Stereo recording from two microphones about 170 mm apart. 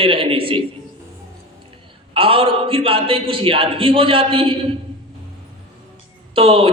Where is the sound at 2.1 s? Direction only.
30° right (ahead or behind).